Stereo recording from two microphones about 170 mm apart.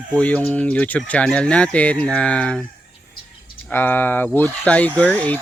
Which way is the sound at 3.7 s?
10° left (ahead or behind).